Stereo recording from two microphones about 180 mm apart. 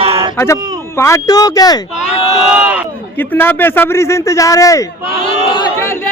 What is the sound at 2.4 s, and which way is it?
Speech, 5° right (ahead or behind).